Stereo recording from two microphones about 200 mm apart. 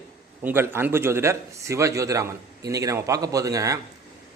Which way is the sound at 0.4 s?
10° right (ahead or behind).